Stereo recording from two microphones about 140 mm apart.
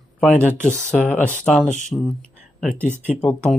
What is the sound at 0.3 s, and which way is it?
Speech, 15° right (ahead or behind).